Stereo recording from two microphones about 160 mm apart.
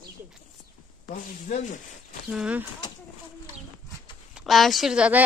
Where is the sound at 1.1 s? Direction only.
50° left (ahead or behind).